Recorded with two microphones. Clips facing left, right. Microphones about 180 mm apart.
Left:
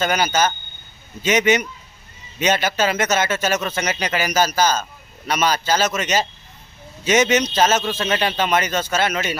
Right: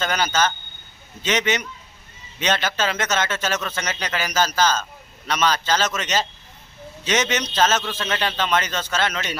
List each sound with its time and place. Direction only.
0.0 s speech: 10° left (ahead or behind)